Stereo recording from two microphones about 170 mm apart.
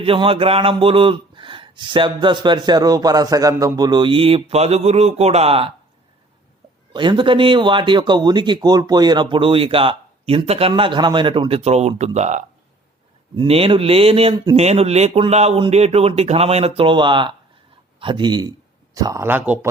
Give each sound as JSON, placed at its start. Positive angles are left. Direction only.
{"t": 0.0, "sound": "speech", "side_deg": -30}
{"t": 6.9, "sound": "speech", "side_deg": -30}
{"t": 13.3, "sound": "a man's voice", "side_deg": -30}